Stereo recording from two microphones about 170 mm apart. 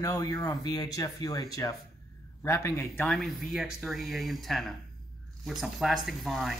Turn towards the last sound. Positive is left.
turn(degrees=0)  # may be behind; listen again after turning